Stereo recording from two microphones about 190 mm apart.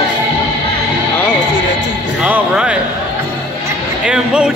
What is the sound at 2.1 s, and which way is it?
Speech, 5° right (ahead or behind).